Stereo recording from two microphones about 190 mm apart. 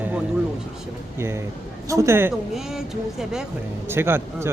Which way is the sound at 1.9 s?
15° right (ahead or behind).